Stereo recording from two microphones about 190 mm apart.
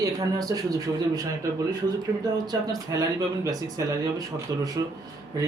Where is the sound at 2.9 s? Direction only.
15° right (ahead or behind).